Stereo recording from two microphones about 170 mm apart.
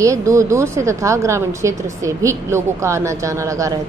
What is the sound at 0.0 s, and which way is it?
A woman's voice, 20° right (ahead or behind).